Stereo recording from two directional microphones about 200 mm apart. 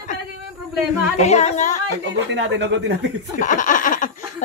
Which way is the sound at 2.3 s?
60° right (ahead or behind).